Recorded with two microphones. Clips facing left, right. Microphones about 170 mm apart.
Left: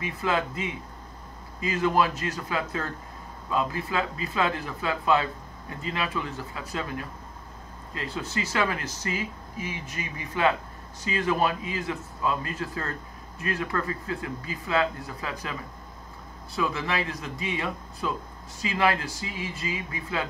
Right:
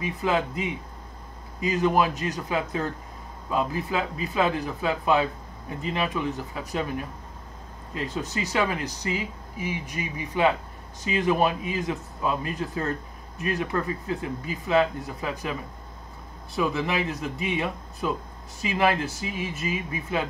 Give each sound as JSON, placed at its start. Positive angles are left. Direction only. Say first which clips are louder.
{"t": 0.2, "sound": "speech", "louder": "right 2 dB", "side_deg": -15}
{"t": 16.5, "sound": "speech", "louder": "right 3 dB", "side_deg": -20}